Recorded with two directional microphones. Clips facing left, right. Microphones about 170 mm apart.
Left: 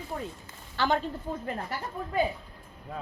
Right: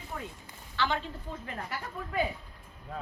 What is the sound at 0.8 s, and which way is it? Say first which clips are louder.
Speech: left 4 dB; 45° left (ahead or behind).